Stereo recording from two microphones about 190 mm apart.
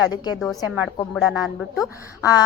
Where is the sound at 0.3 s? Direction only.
Centre (ahead or behind).